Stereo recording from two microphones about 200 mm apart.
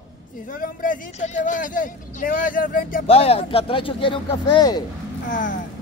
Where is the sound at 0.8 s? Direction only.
40° left (ahead or behind).